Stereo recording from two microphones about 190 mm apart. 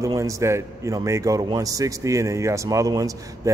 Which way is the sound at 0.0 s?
15° right (ahead or behind).